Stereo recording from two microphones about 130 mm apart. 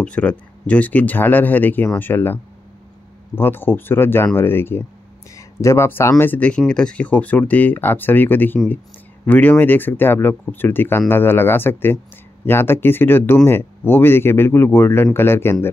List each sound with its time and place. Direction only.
0.0 s speech: 10° left (ahead or behind)